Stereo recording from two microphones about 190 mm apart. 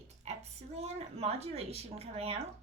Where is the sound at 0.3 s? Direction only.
35° right (ahead or behind).